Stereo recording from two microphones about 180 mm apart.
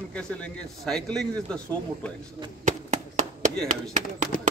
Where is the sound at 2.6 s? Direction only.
40° right (ahead or behind).